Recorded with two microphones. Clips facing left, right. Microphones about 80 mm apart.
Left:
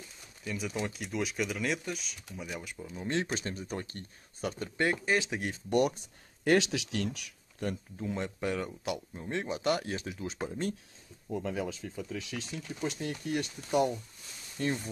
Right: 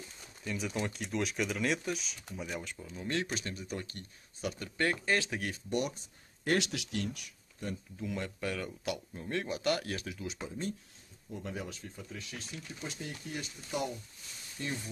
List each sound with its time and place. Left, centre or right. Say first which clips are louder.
0.4 s speech: left 1 dB; centre
3.0 s speech: left 2 dB; left
3.3 s speech: left 3 dB; left
4.6 s speech: left 2 dB; centre
5.7 s speech: left 7 dB; left
6.4 s speech: left 5 dB; left
8.0 s speech: left 3 dB; left
12.0 s speech: left 8 dB; left